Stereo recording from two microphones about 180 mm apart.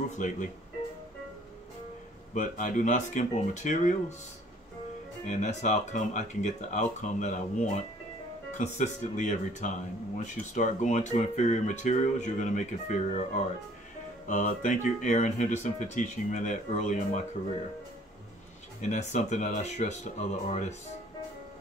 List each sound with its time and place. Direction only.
2.3 s speech: 50° left (ahead or behind)
5.2 s speech: 40° left (ahead or behind)
18.8 s speech: 40° left (ahead or behind)